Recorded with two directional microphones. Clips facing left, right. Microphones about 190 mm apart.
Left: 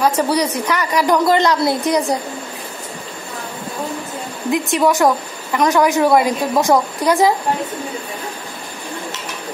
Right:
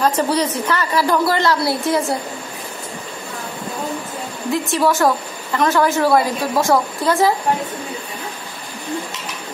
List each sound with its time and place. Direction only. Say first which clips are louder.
0.0 s a woman's voice: left 1 dB; 10° left (ahead or behind)
4.5 s a woman's voice: left 2 dB; 15° left (ahead or behind)